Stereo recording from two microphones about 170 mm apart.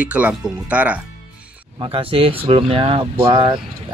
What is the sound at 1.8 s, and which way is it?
A man's voice, 30° right (ahead or behind).